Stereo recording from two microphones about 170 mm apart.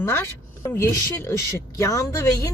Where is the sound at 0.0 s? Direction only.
15° left (ahead or behind).